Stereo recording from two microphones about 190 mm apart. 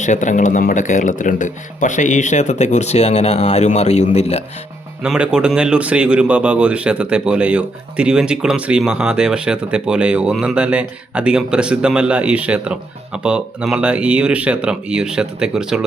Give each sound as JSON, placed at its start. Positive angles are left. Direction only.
{"t": 0.0, "sound": "speech", "side_deg": 40}
{"t": 5.0, "sound": "speech", "side_deg": -5}